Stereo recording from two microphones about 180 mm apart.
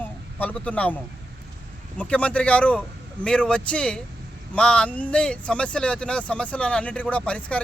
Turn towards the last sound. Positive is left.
turn(degrees=5)  # may be behind; listen again after turning